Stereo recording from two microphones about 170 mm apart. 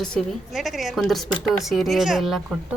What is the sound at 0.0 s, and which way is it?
A woman's voice, 5° left (ahead or behind).